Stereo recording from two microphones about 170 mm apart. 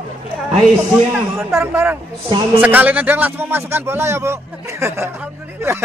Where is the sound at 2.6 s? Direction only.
10° right (ahead or behind).